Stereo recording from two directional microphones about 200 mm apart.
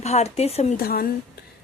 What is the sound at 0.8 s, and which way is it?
Speech, 50° left (ahead or behind).